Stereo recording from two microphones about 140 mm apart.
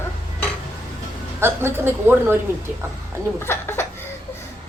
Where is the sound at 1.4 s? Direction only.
15° right (ahead or behind).